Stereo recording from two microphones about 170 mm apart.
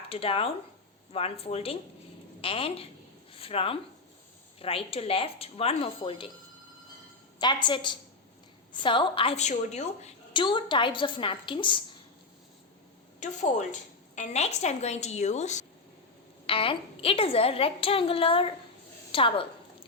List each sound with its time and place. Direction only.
0.1 s a woman's voice: 35° left (ahead or behind)
7.3 s a woman's voice: 25° left (ahead or behind); by 10.1 s 40° left (ahead or behind)
10.3 s a woman's voice: 30° left (ahead or behind)
13.1 s a woman's voice: 45° left (ahead or behind)
16.5 s a woman's voice: 35° left (ahead or behind)